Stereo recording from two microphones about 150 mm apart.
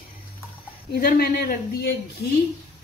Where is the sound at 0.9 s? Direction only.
85° left.